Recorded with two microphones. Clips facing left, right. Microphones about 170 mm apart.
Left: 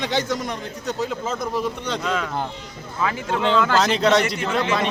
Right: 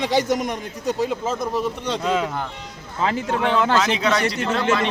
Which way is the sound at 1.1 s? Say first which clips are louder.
Right 2 dB; 5° right (ahead or behind).